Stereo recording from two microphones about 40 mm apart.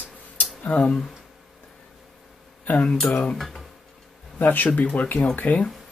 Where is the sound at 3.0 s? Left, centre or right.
Left.